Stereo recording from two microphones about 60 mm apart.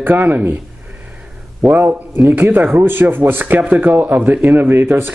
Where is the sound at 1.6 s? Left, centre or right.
Right.